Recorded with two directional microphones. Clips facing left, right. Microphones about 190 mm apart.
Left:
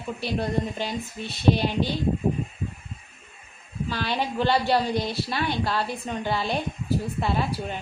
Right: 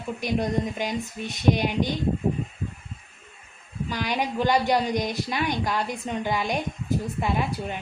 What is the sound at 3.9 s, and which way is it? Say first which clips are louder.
A woman's voice: even; 15° right (ahead or behind).